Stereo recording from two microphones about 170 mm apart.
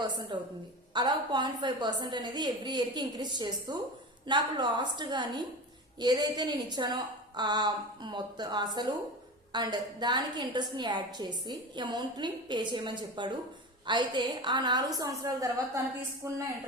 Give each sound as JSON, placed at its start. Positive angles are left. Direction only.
{"t": 0.0, "sound": "a woman's voice", "side_deg": -25}